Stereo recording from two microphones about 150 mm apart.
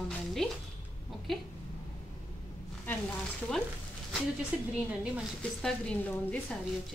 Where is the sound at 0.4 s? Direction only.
5° left (ahead or behind).